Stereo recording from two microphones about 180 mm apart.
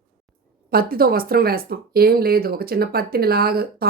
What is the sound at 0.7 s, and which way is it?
Speech, 55° right (ahead or behind).